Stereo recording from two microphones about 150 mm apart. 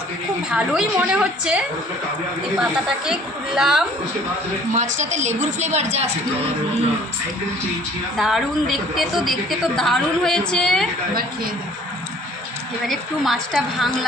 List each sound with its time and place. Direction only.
0.5 s a woman's voice: 5° right (ahead or behind)
4.8 s a woman's voice: 50° right (ahead or behind)
8.1 s a woman's voice: centre (ahead or behind)
12.9 s a woman's voice: centre (ahead or behind)